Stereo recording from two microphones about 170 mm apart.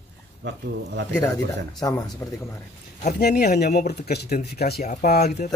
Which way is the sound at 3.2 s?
70° left (ahead or behind).